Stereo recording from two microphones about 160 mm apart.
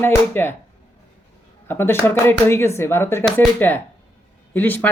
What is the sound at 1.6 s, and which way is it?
Speech, 15° left (ahead or behind).